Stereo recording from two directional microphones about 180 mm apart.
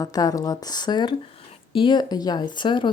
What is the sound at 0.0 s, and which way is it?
Speech, 20° left (ahead or behind).